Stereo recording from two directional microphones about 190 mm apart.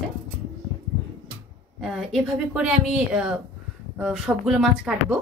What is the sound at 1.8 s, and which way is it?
Speech, centre (ahead or behind).